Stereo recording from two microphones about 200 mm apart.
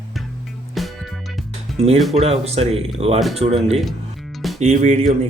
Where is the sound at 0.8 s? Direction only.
Centre (ahead or behind).